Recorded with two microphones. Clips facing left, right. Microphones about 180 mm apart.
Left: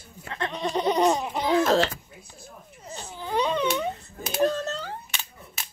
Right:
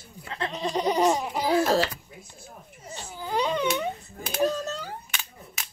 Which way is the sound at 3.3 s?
10° right (ahead or behind).